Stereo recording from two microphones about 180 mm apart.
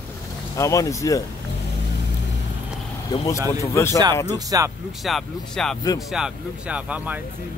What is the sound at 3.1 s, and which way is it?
Speech, 20° left (ahead or behind).